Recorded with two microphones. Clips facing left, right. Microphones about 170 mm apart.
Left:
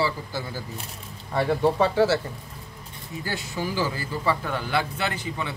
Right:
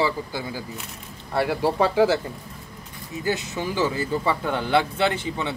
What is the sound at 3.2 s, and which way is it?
Speech, 20° right (ahead or behind).